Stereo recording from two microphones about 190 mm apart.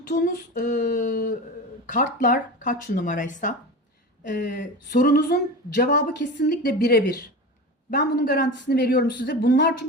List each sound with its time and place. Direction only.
0.1 s a woman's voice: 45° left (ahead or behind); by 9.6 s 65° left (ahead or behind)